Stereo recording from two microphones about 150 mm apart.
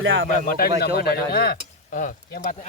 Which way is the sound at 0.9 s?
90° left.